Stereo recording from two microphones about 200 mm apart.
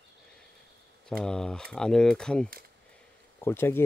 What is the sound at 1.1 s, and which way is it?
Speech, 5° left (ahead or behind).